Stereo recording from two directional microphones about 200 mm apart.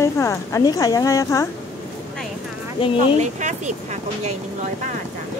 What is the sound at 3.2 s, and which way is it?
Speech, 35° right (ahead or behind).